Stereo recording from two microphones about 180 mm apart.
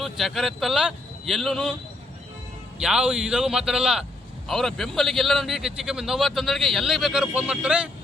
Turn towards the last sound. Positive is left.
turn(degrees=-5)  # may be behind; listen again after turning